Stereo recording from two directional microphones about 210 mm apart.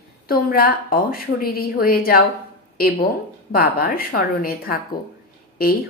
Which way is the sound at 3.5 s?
45° left (ahead or behind).